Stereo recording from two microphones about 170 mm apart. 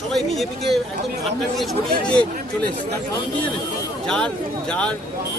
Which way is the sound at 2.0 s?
5° left (ahead or behind).